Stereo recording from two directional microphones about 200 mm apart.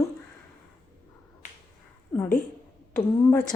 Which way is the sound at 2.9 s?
5° left (ahead or behind).